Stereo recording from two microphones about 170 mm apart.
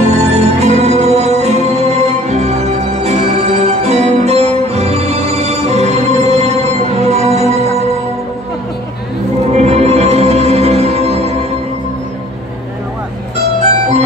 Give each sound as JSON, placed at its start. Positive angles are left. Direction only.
{"t": 0.0, "sound": "music", "side_deg": -40}
{"t": 9.5, "sound": "music", "side_deg": -40}
{"t": 13.6, "sound": "music", "side_deg": -40}